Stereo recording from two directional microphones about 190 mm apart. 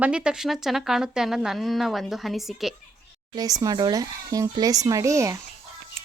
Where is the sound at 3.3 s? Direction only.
20° right (ahead or behind).